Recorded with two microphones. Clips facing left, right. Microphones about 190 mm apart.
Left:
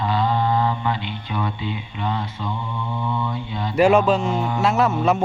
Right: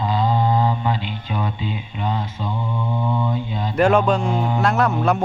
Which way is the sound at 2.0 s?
20° right (ahead or behind).